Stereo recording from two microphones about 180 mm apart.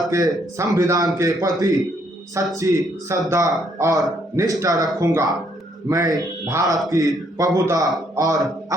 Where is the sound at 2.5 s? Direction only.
20° right (ahead or behind).